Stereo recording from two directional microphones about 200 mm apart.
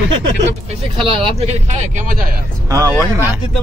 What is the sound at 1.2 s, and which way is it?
Speech, 35° right (ahead or behind).